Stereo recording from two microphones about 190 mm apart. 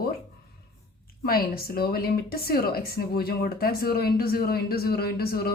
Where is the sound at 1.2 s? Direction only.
50° left (ahead or behind).